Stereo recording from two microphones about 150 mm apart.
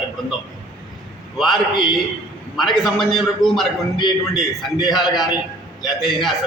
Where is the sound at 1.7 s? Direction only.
30° left (ahead or behind).